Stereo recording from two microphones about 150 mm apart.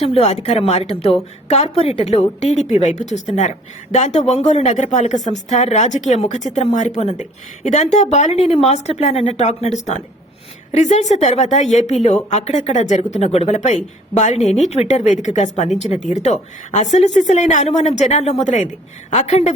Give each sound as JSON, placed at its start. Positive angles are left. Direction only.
{"t": 0.0, "sound": "speech", "side_deg": 40}
{"t": 14.4, "sound": "speech", "side_deg": 0}
{"t": 14.7, "sound": "speech", "side_deg": 45}